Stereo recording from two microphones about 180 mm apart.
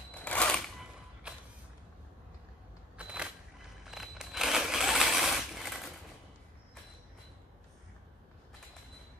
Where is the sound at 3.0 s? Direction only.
5° right (ahead or behind).